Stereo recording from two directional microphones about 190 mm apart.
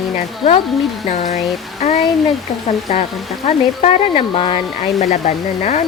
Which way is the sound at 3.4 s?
35° left (ahead or behind).